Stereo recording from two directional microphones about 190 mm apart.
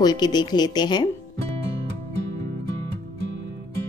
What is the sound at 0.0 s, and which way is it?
Speech, 20° left (ahead or behind).